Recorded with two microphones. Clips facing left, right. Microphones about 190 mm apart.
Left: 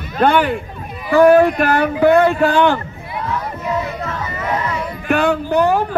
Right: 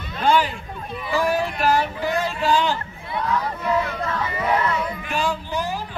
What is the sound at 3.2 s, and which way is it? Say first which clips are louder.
Crowd: left 1 dB; 5° left (ahead or behind).